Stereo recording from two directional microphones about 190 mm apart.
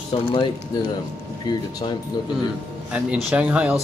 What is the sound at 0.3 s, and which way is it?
Speech, 25° left (ahead or behind).